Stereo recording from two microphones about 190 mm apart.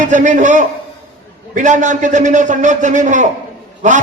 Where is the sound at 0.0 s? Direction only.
40° right (ahead or behind).